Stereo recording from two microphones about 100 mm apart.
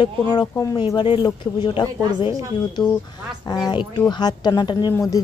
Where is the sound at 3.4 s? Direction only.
40° left (ahead or behind).